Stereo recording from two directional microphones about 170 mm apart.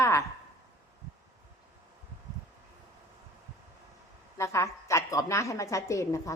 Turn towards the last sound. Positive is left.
turn(degrees=20)  # may be behind; listen again after turning